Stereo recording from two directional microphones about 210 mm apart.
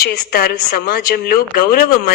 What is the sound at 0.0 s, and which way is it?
Speech, 45° left (ahead or behind).